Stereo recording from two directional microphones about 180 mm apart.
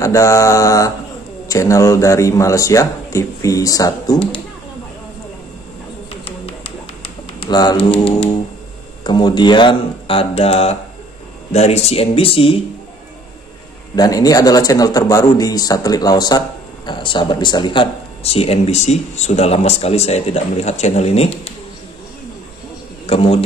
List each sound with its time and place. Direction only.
0.0 s a man's voice: 15° left (ahead or behind)
6.2 s a sound: 35° left (ahead or behind)
7.3 s speech: 25° left (ahead or behind)
13.9 s speech: 20° left (ahead or behind)
23.0 s a man's voice: 30° left (ahead or behind)